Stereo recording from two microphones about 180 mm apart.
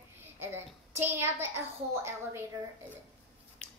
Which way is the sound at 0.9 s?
15° right (ahead or behind).